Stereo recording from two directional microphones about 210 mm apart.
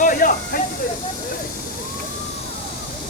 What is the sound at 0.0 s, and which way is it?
Hiss, 40° left (ahead or behind).